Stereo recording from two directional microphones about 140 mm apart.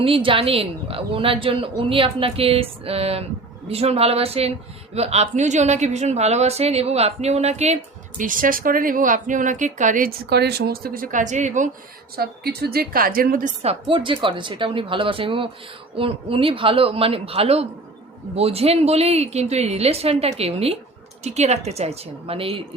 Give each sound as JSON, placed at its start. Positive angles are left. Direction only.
{"t": 0.0, "sound": "a woman's voice", "side_deg": -40}
{"t": 8.2, "sound": "speech", "side_deg": -75}
{"t": 10.7, "sound": "a woman's voice", "side_deg": -90}
{"t": 12.1, "sound": "a woman's voice", "side_deg": -90}
{"t": 13.6, "sound": "a woman's voice", "side_deg": -45}